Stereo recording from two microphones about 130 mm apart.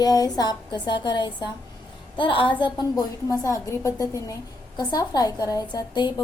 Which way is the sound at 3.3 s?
25° left (ahead or behind).